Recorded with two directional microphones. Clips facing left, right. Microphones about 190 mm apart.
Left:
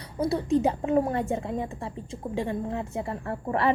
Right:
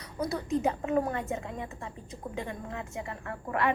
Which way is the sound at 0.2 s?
30° left (ahead or behind).